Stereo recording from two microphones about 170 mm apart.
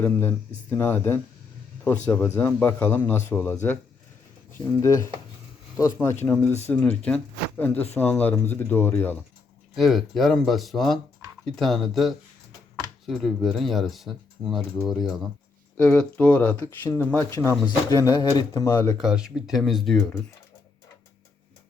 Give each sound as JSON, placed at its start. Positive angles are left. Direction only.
{"t": 0.0, "sound": "speech", "side_deg": 10}
{"t": 4.8, "sound": "speech", "side_deg": 20}
{"t": 6.2, "sound": "speech", "side_deg": 10}
{"t": 9.7, "sound": "speech", "side_deg": 0}
{"t": 18.9, "sound": "speech", "side_deg": -5}